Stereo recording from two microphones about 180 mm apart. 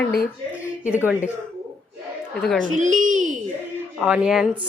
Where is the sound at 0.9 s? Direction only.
10° right (ahead or behind).